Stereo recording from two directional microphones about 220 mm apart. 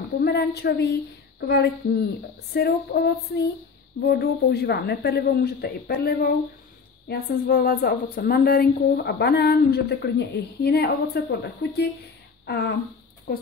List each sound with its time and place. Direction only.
0.2 s speech: 50° left (ahead or behind)
2.5 s speech: 45° left (ahead or behind)